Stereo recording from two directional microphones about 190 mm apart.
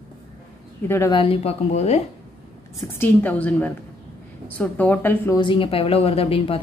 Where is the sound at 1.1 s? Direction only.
30° left (ahead or behind).